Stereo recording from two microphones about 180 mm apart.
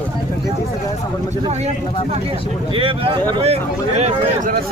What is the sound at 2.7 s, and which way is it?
Speech, 30° right (ahead or behind).